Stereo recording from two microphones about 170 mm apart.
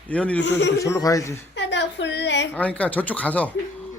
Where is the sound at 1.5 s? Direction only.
90° left.